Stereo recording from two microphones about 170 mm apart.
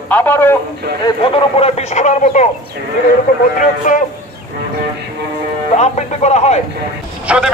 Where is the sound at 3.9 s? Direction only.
50° left (ahead or behind).